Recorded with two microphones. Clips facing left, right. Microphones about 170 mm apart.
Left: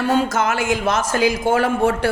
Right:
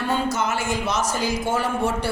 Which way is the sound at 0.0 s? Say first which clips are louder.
Left 5 dB; 90° left.